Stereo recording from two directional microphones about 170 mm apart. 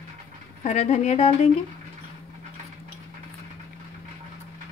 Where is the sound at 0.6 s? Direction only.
40° left (ahead or behind).